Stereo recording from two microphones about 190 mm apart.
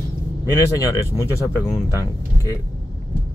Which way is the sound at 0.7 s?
15° left (ahead or behind).